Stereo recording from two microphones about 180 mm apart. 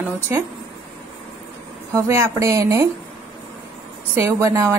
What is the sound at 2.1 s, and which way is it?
Speech, 15° right (ahead or behind).